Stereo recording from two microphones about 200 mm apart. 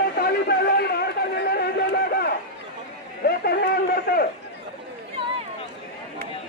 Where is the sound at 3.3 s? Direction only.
50° left (ahead or behind).